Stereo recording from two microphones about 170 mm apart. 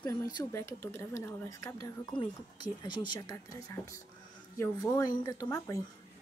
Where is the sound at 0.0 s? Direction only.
15° left (ahead or behind).